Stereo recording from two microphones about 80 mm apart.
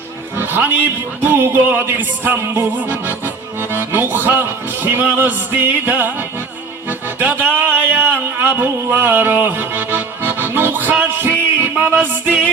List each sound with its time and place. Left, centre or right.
0.3 s speech: right
1.2 s music: right
7.2 s music: right
7.9 s a sound: right
8.5 s music: right